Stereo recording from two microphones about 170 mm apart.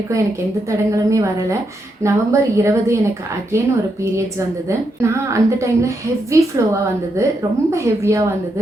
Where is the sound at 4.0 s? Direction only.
15° right (ahead or behind).